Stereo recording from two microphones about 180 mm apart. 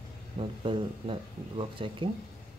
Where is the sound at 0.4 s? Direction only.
30° right (ahead or behind).